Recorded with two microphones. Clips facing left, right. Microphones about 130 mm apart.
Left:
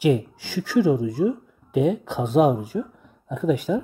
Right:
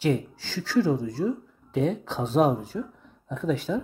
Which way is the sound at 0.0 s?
15° left (ahead or behind).